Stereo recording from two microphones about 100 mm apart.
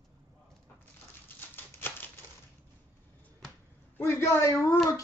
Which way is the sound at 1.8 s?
25° left (ahead or behind).